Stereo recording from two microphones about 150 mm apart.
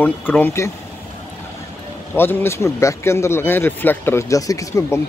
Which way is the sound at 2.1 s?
15° left (ahead or behind).